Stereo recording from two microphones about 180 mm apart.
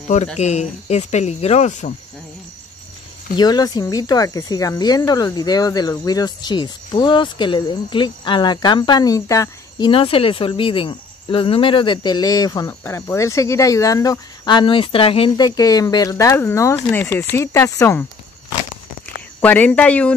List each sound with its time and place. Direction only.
0.4 s speech: 40° left (ahead or behind)
3.3 s speech: 20° left (ahead or behind)
9.8 s speech: 30° left (ahead or behind); by 18.0 s 15° left (ahead or behind)
19.4 s speech: 10° left (ahead or behind)